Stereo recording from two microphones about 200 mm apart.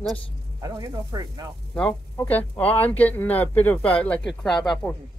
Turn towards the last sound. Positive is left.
turn(degrees=5)  # may be behind; listen again after turning